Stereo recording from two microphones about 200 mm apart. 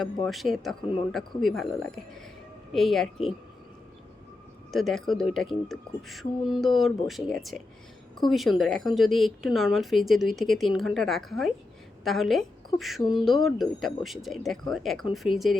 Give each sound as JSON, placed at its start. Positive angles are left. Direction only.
{"t": 0.0, "sound": "speech", "side_deg": 0}
{"t": 4.7, "sound": "a woman's voice", "side_deg": 0}